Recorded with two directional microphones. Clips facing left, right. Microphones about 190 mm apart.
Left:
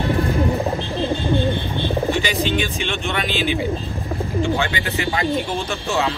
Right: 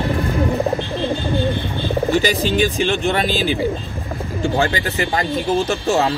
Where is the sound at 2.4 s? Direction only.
40° right (ahead or behind).